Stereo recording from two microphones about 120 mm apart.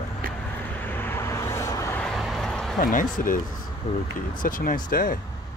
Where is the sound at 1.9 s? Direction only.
5° left (ahead or behind).